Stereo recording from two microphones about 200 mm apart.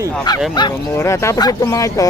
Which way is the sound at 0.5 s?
15° left (ahead or behind).